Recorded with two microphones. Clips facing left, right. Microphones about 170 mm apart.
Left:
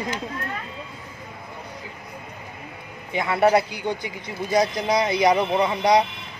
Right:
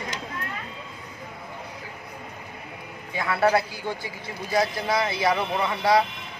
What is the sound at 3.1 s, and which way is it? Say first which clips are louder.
A man's voice: left 3 dB; 20° left (ahead or behind).